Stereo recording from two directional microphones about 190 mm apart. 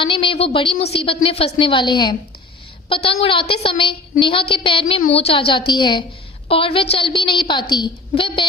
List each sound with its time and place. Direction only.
0.0 s a woman's voice: 25° left (ahead or behind)